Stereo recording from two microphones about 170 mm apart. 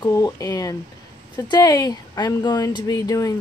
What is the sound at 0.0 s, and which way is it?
Speech, 20° left (ahead or behind).